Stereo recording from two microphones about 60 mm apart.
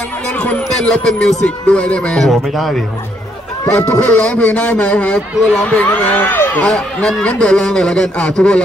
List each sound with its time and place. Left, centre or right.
0.7 s a man's voice: centre
2.1 s speech: centre
3.7 s a man's voice: left
5.9 s speech: left
6.6 s speech: centre